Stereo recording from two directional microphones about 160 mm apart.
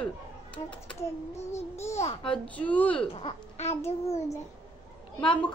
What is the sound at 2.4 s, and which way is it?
Speech, 10° left (ahead or behind).